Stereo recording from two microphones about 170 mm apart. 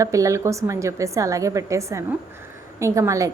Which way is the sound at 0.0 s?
20° right (ahead or behind).